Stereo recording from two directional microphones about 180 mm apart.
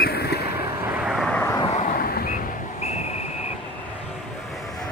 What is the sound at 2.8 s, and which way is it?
Vehicle, 40° left (ahead or behind).